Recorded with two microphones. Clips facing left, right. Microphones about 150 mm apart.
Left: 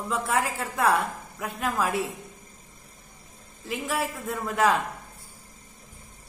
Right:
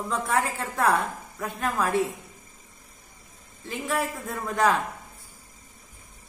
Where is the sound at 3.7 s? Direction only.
5° left (ahead or behind).